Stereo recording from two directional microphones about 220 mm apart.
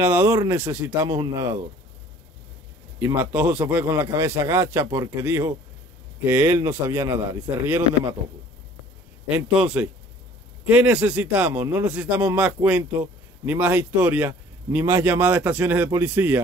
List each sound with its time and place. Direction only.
0.0 s a man's voice: 10° right (ahead or behind)
3.0 s a man's voice: 10° right (ahead or behind)
9.6 s a man's voice: 5° right (ahead or behind)